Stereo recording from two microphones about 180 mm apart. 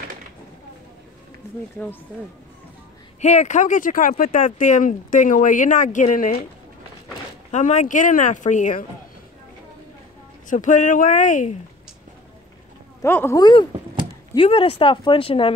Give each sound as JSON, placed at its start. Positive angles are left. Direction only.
{"t": 3.2, "sound": "speech", "side_deg": 40}
{"t": 7.5, "sound": "speech", "side_deg": 40}
{"t": 10.5, "sound": "speech", "side_deg": 45}
{"t": 13.0, "sound": "speech", "side_deg": 15}